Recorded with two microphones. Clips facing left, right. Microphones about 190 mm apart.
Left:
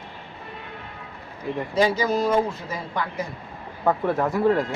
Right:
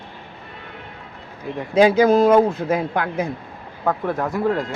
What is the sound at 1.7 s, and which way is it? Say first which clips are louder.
A man's voice: right 8 dB; 55° right (ahead or behind).